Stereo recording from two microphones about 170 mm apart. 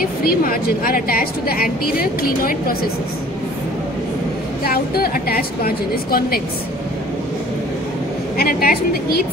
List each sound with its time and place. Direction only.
0.0 s a woman's voice: 60° left (ahead or behind)
4.6 s a woman's voice: 60° left (ahead or behind)
8.4 s a woman's voice: 60° left (ahead or behind)